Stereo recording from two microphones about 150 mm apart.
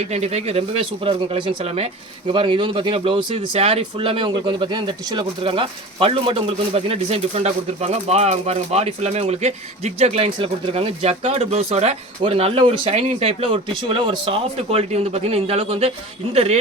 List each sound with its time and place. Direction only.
0.1 s speech: 45° right (ahead or behind)